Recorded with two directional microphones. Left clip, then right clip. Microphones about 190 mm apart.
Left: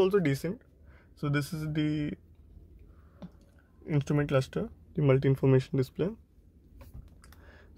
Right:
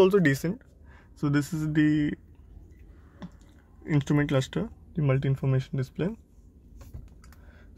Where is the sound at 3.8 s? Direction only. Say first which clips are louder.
Right 4 dB; 5° right (ahead or behind).